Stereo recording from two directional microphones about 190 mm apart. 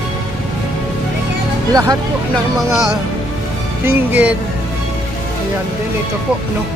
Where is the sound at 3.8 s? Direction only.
10° right (ahead or behind).